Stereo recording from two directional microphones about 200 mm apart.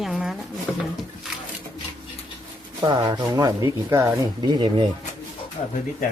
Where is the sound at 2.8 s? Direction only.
20° right (ahead or behind).